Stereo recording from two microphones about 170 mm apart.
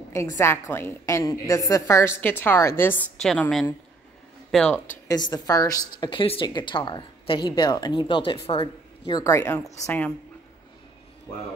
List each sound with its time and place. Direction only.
0.1 s a woman's voice: 15° left (ahead or behind); by 4.8 s centre (ahead or behind)
5.0 s a woman's voice: 25° left (ahead or behind)